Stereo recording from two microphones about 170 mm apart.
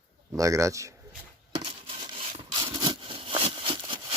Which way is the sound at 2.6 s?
20° right (ahead or behind).